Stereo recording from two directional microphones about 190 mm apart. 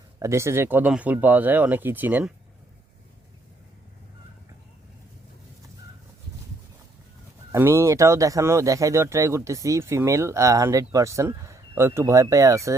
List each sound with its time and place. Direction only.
0.2 s speech: 15° right (ahead or behind)
7.5 s speech: 15° right (ahead or behind)